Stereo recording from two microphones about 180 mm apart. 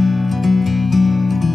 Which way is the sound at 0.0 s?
Centre (ahead or behind).